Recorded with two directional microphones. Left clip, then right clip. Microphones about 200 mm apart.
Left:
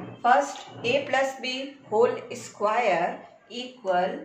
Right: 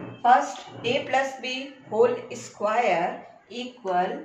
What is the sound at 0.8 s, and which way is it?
A woman's voice, 25° left (ahead or behind).